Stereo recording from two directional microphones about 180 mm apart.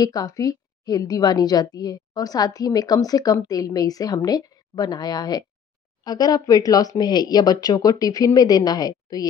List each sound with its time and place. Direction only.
0.0 s a woman's voice: 20° left (ahead or behind)